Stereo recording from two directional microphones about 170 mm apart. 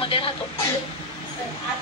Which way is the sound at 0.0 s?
30° left (ahead or behind).